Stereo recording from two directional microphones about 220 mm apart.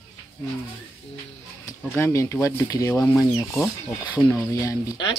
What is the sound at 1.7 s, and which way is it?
Speech, 10° left (ahead or behind).